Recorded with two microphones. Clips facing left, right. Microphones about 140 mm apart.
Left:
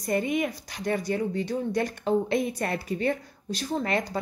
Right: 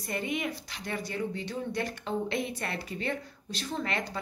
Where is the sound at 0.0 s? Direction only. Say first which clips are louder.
Left 7 dB; 45° left (ahead or behind).